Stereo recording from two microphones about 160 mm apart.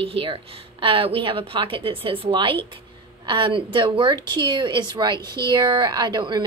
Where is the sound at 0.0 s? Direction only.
35° right (ahead or behind).